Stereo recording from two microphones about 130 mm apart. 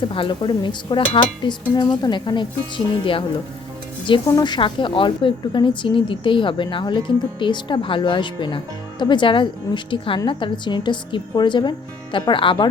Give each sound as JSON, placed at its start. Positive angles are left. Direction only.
{"t": 0.1, "sound": "a woman's voice", "side_deg": 40}
{"t": 4.3, "sound": "a woman's voice", "side_deg": 35}